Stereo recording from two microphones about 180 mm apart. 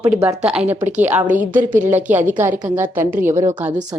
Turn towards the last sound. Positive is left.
turn(degrees=-15)  # may be behind; listen again after turning